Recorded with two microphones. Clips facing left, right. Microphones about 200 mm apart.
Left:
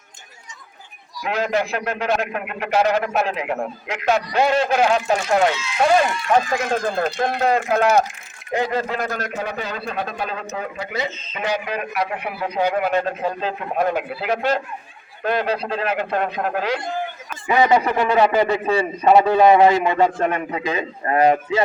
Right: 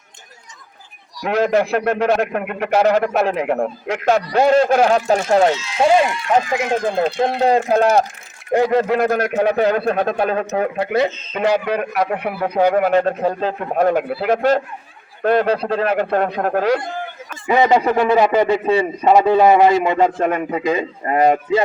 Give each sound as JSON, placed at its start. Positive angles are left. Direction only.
{"t": 1.2, "sound": "a man's voice", "side_deg": -50}
{"t": 3.8, "sound": "a man's voice", "side_deg": -50}
{"t": 5.7, "sound": "speech", "side_deg": -20}
{"t": 8.5, "sound": "a man's voice", "side_deg": -55}
{"t": 17.5, "sound": "a man's voice", "side_deg": -20}